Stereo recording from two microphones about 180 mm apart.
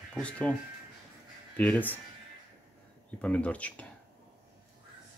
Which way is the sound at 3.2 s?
5° left (ahead or behind).